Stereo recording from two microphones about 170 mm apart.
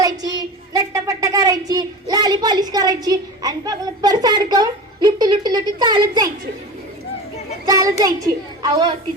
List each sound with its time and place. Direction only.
0.0 s speech: 20° right (ahead or behind)
7.7 s a child's voice: 20° right (ahead or behind)